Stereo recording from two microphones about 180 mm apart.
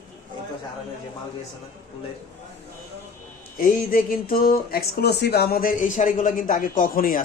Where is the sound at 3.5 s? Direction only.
50° left (ahead or behind).